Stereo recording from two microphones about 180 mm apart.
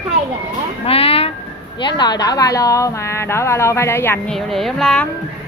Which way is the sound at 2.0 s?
20° left (ahead or behind).